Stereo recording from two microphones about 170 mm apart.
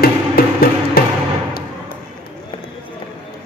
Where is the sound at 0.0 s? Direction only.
60° left (ahead or behind).